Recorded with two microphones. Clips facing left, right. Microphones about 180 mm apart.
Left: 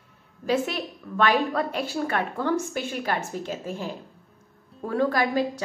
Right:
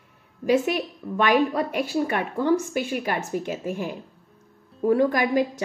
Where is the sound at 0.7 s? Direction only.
15° right (ahead or behind).